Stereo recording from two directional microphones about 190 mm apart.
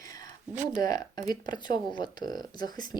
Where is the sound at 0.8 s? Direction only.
20° left (ahead or behind).